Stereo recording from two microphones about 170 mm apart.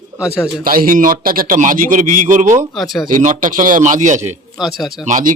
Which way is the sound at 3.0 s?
50° right (ahead or behind).